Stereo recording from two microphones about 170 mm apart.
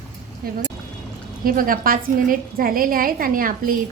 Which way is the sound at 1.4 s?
55° right (ahead or behind).